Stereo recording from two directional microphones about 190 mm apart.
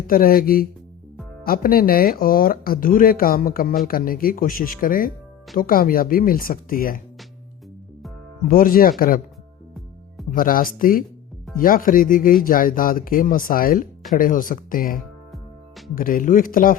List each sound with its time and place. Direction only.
0.1 s speech: 50° left (ahead or behind)
8.4 s speech: 50° left (ahead or behind)
10.3 s speech: 50° left (ahead or behind)